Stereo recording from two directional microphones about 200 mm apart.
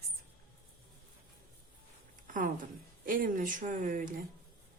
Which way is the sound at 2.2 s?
40° right (ahead or behind).